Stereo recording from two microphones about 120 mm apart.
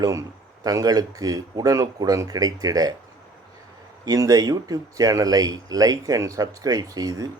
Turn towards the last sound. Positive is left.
turn(degrees=-30)  # may be behind; listen again after turning